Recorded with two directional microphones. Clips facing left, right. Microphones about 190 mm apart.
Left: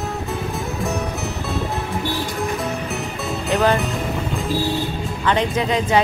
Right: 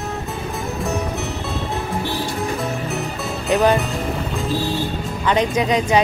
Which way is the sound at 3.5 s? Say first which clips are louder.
Right 2 dB; 15° right (ahead or behind).